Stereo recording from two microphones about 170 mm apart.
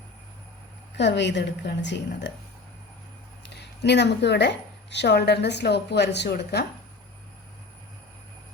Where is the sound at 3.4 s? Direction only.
85° left.